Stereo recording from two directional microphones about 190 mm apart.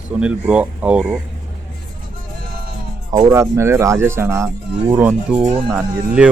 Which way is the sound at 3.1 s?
15° right (ahead or behind).